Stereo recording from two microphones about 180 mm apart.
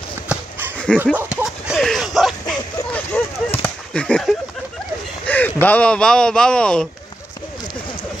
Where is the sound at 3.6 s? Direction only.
5° left (ahead or behind).